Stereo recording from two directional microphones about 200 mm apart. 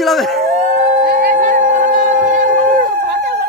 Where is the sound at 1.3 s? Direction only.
40° right (ahead or behind).